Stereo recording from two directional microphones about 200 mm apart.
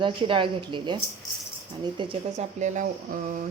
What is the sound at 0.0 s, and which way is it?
A woman's voice, 25° right (ahead or behind).